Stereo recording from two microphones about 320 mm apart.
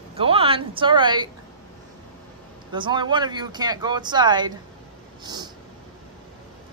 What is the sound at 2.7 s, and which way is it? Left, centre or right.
Speech, centre.